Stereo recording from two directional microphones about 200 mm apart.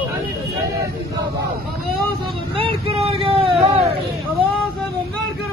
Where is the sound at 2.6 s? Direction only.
30° right (ahead or behind).